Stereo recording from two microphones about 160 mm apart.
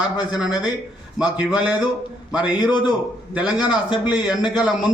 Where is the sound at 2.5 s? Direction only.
25° left (ahead or behind).